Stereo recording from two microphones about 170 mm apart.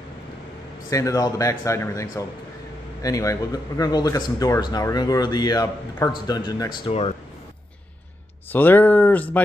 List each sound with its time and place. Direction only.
0.8 s speech: 20° left (ahead or behind)
8.5 s speech: 10° left (ahead or behind)